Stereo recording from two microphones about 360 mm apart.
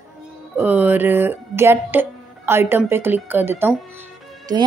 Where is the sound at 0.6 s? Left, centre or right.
Centre.